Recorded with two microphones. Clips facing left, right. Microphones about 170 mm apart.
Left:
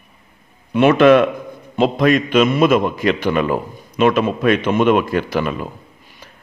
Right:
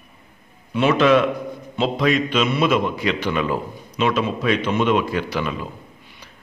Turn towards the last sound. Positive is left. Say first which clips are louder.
# even
turn(degrees=50)  # may be behind; listen again after turning